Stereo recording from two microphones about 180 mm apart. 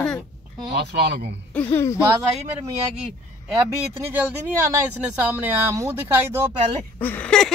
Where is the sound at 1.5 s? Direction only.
10° left (ahead or behind).